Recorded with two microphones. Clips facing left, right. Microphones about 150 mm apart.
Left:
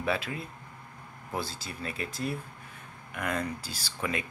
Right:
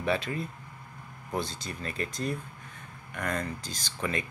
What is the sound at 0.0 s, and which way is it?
Speech, 5° left (ahead or behind).